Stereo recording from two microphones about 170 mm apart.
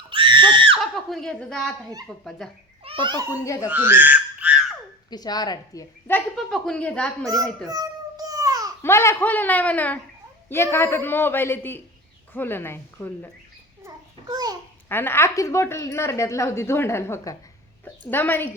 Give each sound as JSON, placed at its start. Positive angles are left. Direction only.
{"t": 0.1, "sound": "screaming", "side_deg": -30}
{"t": 0.8, "sound": "speech", "side_deg": 0}
{"t": 2.8, "sound": "a child's voice", "side_deg": -30}
{"t": 3.2, "sound": "a woman's voice", "side_deg": 20}
{"t": 3.7, "sound": "frog", "side_deg": -10}
{"t": 5.1, "sound": "a woman's voice", "side_deg": 25}
{"t": 6.1, "sound": "a woman's voice", "side_deg": 5}
{"t": 7.7, "sound": "babbling", "side_deg": -20}
{"t": 8.8, "sound": "a woman's voice", "side_deg": 15}
{"t": 13.8, "sound": "a sound", "side_deg": -20}
{"t": 14.8, "sound": "a woman's voice", "side_deg": 10}